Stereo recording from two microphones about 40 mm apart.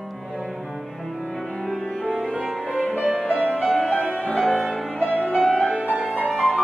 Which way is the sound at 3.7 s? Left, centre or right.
Centre.